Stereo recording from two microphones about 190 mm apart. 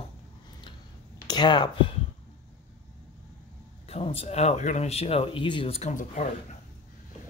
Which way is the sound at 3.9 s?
30° left (ahead or behind).